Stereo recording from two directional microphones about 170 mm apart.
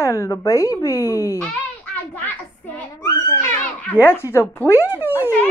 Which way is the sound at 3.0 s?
20° left (ahead or behind).